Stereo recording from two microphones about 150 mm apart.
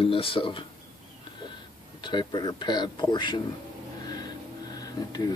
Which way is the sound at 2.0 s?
30° left (ahead or behind).